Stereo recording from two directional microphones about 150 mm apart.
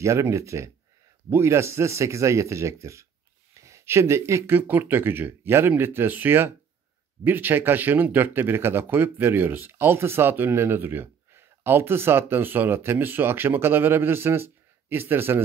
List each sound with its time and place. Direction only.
0.0 s speech: 20° right (ahead or behind)